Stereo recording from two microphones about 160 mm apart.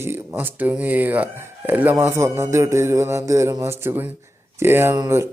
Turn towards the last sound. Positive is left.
turn(degrees=-20)  # may be behind; listen again after turning